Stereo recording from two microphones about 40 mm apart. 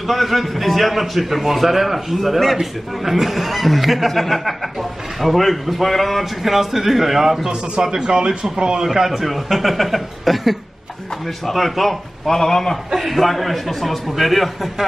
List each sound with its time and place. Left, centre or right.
0.0 s a man's voice: centre
7.8 s speech: centre
8.8 s a man's voice: centre
12.9 s a man's voice: centre